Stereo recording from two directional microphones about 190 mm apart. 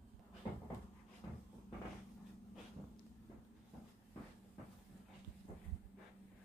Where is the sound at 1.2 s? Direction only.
15° left (ahead or behind).